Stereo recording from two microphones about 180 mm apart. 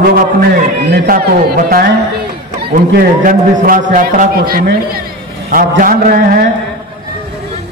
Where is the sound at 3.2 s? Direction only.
50° right (ahead or behind).